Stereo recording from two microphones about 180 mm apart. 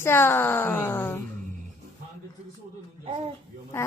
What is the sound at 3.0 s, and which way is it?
Speech, 30° right (ahead or behind).